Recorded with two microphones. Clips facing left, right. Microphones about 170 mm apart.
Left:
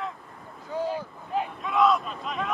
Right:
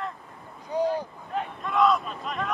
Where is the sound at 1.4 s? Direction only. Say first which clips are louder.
Even; centre (ahead or behind).